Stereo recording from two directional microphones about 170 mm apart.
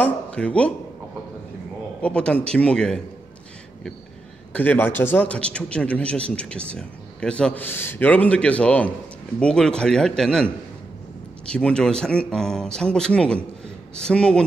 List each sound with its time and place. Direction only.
0.0 s a man's voice: 5° left (ahead or behind)
2.0 s speech: 5° left (ahead or behind)
4.5 s a man's voice: 10° left (ahead or behind)